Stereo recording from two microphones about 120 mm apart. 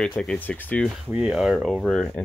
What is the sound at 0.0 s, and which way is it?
Speech, 5° left (ahead or behind).